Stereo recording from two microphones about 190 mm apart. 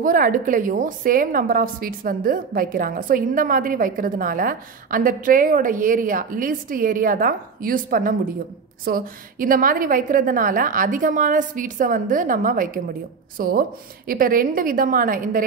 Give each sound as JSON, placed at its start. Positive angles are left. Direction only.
{"t": 0.0, "sound": "a woman's voice", "side_deg": -45}